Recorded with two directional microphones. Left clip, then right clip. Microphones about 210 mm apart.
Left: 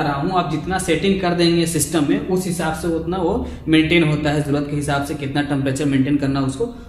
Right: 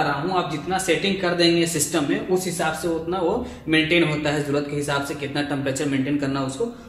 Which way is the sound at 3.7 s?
20° left (ahead or behind).